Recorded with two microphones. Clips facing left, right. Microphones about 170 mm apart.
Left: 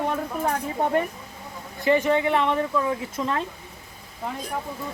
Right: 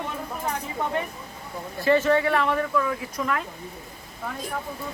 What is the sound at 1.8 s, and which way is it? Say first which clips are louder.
Speech: even; 15° left (ahead or behind).